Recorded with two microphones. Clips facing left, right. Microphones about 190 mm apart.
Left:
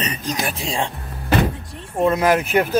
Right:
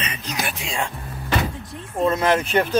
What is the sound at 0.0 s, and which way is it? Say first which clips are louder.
Music: left 6 dB; 45° left (ahead or behind).